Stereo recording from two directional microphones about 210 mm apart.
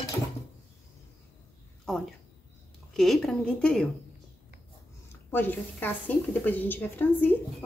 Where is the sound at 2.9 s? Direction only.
Centre (ahead or behind).